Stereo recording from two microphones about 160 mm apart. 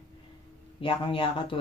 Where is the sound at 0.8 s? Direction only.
35° left (ahead or behind).